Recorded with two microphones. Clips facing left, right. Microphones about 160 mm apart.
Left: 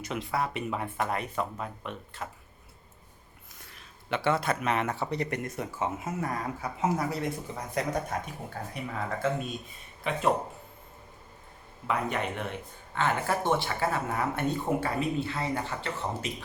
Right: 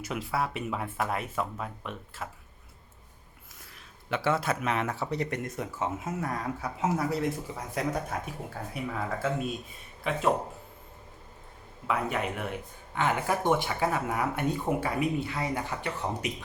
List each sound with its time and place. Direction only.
0.0 s speech: 5° right (ahead or behind)
3.6 s speech: centre (ahead or behind)
11.9 s speech: 5° right (ahead or behind)